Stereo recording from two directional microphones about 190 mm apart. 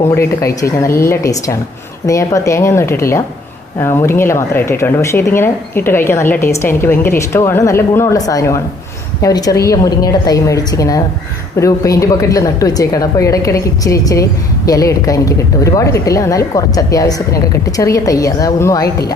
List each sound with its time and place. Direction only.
0.0 s a woman's voice: 15° left (ahead or behind)